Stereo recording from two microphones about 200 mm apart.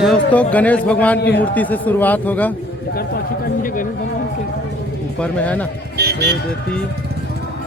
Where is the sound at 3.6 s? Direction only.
45° left (ahead or behind).